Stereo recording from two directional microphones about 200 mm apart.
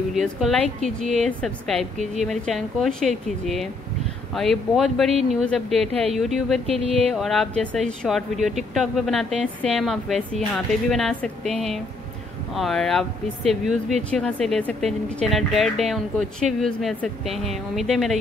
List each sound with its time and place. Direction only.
0.1 s speech: centre (ahead or behind)
6.6 s music: 30° right (ahead or behind)
7.1 s speech: centre (ahead or behind)
14.1 s speech: centre (ahead or behind)